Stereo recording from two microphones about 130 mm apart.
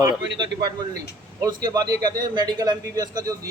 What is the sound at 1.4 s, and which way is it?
A man's voice, 30° right (ahead or behind).